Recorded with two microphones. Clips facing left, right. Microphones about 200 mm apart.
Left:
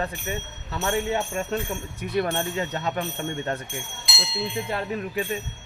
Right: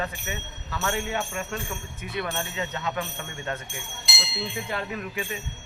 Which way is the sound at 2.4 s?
35° left (ahead or behind).